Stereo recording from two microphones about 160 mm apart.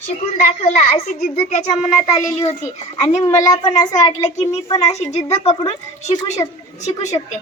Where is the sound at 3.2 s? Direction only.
25° left (ahead or behind).